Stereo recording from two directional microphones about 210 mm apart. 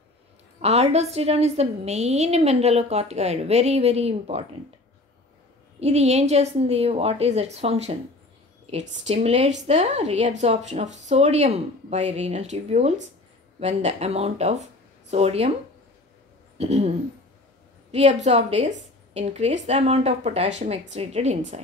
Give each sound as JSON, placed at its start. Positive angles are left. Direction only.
{"t": 0.6, "sound": "a woman's voice", "side_deg": -30}
{"t": 5.8, "sound": "a woman's voice", "side_deg": -30}
{"t": 16.5, "sound": "a sound", "side_deg": -30}
{"t": 17.9, "sound": "a woman's voice", "side_deg": -30}